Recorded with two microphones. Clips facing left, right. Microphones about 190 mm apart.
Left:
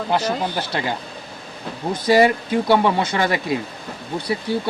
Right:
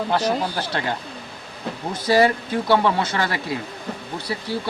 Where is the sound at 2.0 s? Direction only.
15° left (ahead or behind).